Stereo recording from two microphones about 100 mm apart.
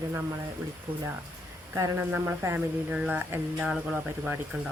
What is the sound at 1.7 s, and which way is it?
Speech, 30° right (ahead or behind).